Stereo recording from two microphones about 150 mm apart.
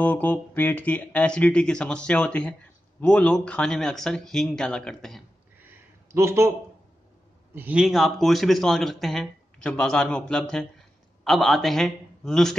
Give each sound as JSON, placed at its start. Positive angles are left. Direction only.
{"t": 0.0, "sound": "speech", "side_deg": 10}
{"t": 6.0, "sound": "speech", "side_deg": -15}
{"t": 7.5, "sound": "a man's voice", "side_deg": -10}
{"t": 7.8, "sound": "speech", "side_deg": 0}